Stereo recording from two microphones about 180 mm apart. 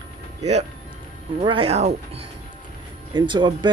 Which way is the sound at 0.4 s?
35° right (ahead or behind).